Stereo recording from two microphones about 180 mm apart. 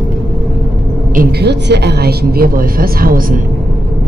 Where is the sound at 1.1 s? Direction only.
60° right (ahead or behind).